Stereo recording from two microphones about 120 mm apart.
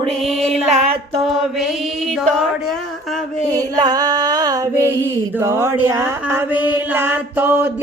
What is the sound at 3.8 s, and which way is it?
Music, 35° right (ahead or behind).